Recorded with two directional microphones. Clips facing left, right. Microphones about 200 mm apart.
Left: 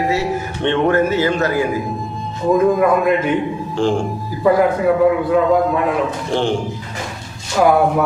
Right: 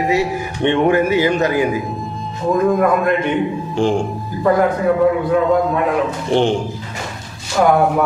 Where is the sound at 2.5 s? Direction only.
Centre (ahead or behind).